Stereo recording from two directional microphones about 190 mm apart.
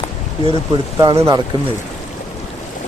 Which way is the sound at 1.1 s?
30° right (ahead or behind).